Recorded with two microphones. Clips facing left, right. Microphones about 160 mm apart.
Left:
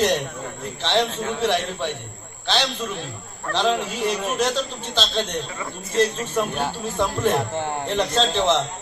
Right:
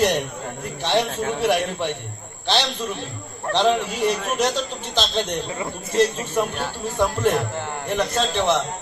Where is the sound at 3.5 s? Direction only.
15° right (ahead or behind).